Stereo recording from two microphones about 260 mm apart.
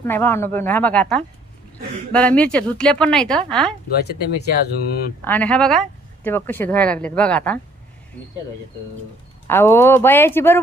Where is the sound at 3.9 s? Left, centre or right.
Left.